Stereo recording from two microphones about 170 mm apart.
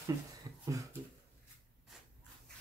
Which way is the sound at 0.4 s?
20° right (ahead or behind).